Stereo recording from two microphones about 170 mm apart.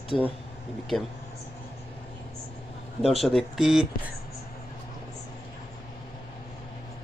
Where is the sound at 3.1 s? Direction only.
Centre (ahead or behind).